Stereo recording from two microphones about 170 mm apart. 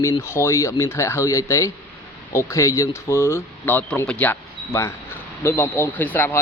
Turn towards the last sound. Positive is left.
turn(degrees=10)  # may be behind; listen again after turning